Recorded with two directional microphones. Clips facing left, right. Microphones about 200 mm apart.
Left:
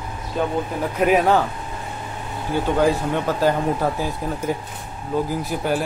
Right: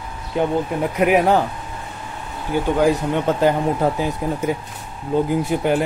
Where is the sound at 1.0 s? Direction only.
15° right (ahead or behind).